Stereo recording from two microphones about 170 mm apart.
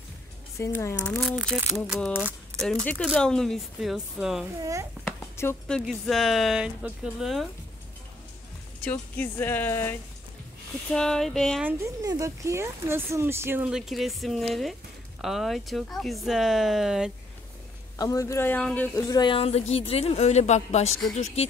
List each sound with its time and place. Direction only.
0.6 s speech: 15° left (ahead or behind)
1.1 s speech: centre (ahead or behind)
4.6 s speech: 20° right (ahead or behind)
5.0 s a sound: 15° left (ahead or behind)
5.8 s speech: centre (ahead or behind)
8.8 s speech: 10° left (ahead or behind)
11.6 s speech: 20° right (ahead or behind); by 17.1 s 5° right (ahead or behind)
17.9 s speech: 20° left (ahead or behind)
18.9 s speech: 25° left (ahead or behind); by 20.9 s 40° left (ahead or behind)